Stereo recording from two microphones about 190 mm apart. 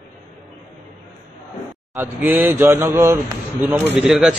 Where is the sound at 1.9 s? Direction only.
10° right (ahead or behind).